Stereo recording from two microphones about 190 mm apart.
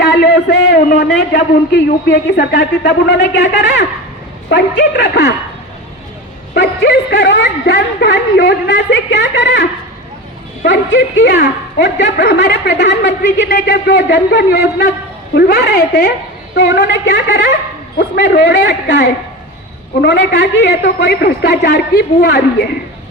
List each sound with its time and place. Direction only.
0.0 s a sound: 65° left (ahead or behind)
1.3 s a woman's voice: 65° left (ahead or behind)
6.5 s a woman's voice: 60° left (ahead or behind)
10.9 s a woman's voice: 70° left (ahead or behind)